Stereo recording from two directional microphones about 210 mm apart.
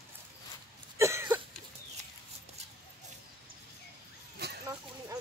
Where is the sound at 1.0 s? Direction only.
10° right (ahead or behind).